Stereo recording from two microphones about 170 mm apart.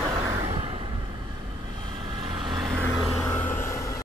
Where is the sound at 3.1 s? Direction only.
10° left (ahead or behind).